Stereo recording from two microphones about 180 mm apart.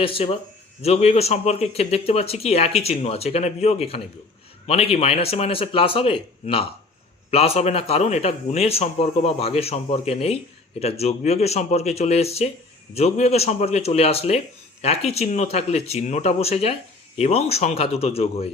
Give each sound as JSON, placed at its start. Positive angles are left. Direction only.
{"t": 0.0, "sound": "speech", "side_deg": 30}